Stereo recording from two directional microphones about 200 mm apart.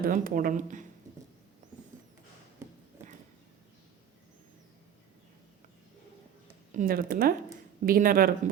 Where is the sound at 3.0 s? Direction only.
10° right (ahead or behind).